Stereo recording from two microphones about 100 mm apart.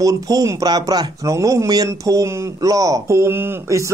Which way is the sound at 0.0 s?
35° right (ahead or behind).